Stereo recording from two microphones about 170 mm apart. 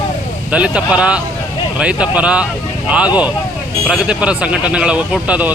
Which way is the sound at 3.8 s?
5° right (ahead or behind).